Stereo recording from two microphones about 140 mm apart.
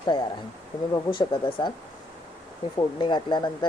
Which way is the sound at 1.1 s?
35° left (ahead or behind).